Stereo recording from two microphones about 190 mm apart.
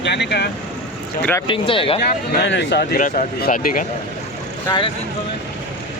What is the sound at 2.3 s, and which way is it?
Speech, 65° left (ahead or behind).